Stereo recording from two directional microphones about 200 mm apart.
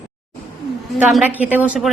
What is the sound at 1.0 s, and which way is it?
Speech, 10° right (ahead or behind).